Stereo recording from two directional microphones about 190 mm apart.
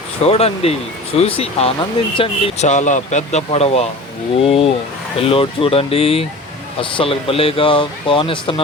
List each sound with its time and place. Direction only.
0.2 s speech: 35° left (ahead or behind)